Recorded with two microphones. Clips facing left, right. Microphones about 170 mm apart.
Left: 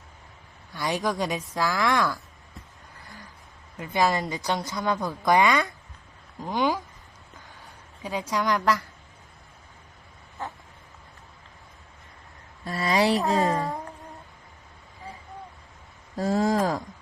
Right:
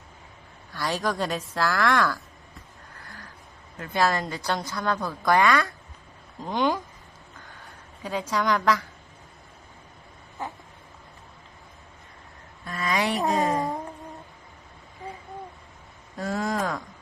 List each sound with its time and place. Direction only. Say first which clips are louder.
0.7 s a woman's voice: even; 15° left (ahead or behind)
3.8 s a woman's voice: even; 15° left (ahead or behind)
6.6 s speech: even; centre (ahead or behind)
8.0 s a woman's voice: right 1 dB; 10° left (ahead or behind)
12.6 s speech: left 4 dB; 30° left (ahead or behind)
13.5 s a sound: right 1 dB; 15° right (ahead or behind)
16.1 s speech: left 5 dB; 25° left (ahead or behind)